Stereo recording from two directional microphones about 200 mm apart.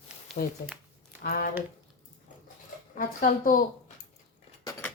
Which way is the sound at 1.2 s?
45° left (ahead or behind).